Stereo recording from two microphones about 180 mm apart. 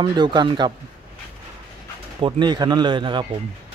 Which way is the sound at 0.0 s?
25° right (ahead or behind).